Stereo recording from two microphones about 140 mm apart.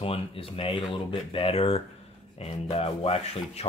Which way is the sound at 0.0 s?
40° left (ahead or behind).